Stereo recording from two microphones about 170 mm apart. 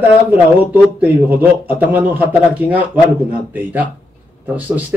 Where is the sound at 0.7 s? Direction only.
10° right (ahead or behind).